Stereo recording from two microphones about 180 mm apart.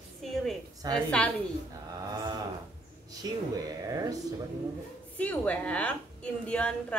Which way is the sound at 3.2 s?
20° right (ahead or behind).